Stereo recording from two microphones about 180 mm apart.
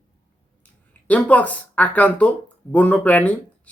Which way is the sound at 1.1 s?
10° left (ahead or behind).